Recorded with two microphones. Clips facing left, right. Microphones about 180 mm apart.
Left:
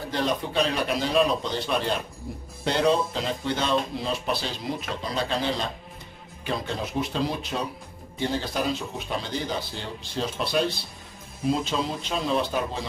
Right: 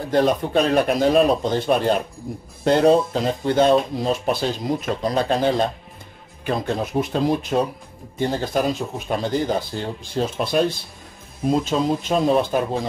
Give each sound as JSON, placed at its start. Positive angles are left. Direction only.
{"t": 0.1, "sound": "speech", "side_deg": -50}